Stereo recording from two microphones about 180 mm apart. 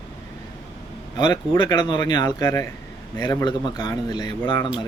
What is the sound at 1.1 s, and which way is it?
Speech, 25° left (ahead or behind).